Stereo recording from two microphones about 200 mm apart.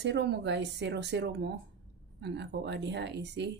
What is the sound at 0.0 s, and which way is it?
Speech, 60° right (ahead or behind).